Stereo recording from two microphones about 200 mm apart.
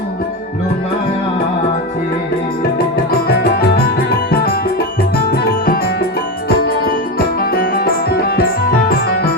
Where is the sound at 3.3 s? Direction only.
50° left (ahead or behind).